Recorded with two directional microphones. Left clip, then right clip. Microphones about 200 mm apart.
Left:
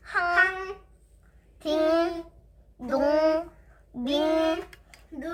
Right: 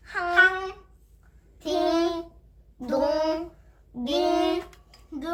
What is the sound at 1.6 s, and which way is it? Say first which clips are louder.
Child singing: left 1 dB; 25° left (ahead or behind).